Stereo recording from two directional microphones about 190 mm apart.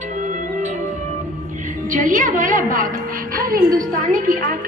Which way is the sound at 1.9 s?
45° right (ahead or behind).